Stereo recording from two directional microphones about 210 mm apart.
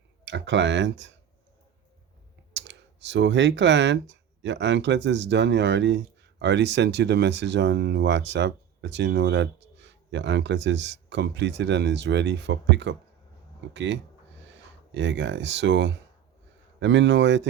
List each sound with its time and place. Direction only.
0.3 s speech: 60° right (ahead or behind)
2.5 s speech: 60° right (ahead or behind)